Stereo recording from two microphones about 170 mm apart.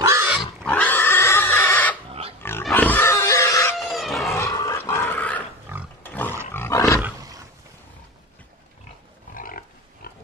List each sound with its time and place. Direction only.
0.0 s pig: 15° right (ahead or behind)
0.7 s pig: 10° left (ahead or behind)
3.7 s wild animals: centre (ahead or behind)
4.3 s pig: 15° left (ahead or behind)
5.7 s pig: 15° right (ahead or behind)
6.0 s roaring cats: 10° left (ahead or behind)
6.5 s roar: 15° left (ahead or behind)
9.3 s pig: 55° left (ahead or behind)